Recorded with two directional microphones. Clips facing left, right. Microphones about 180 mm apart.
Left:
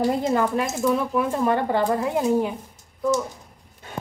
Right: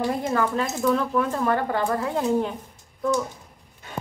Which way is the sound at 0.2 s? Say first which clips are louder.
Left 2 dB; 20° left (ahead or behind).